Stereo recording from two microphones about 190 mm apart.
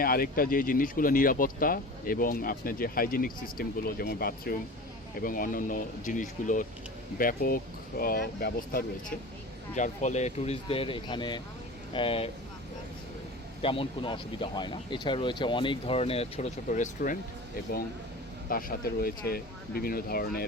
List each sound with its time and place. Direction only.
0.0 s speech: 50° left (ahead or behind)
9.7 s speech: 40° left (ahead or behind)
13.6 s speech: 30° left (ahead or behind)
18.5 s speech: 50° left (ahead or behind)